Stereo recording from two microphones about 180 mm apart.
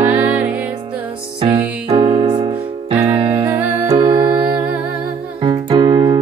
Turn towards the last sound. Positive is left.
turn(degrees=-25)  # may be behind; listen again after turning